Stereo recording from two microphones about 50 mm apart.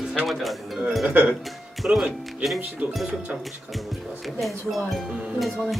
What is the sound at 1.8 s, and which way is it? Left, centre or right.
Speech, right.